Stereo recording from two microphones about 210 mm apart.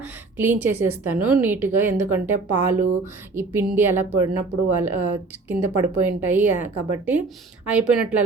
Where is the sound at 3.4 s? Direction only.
10° right (ahead or behind).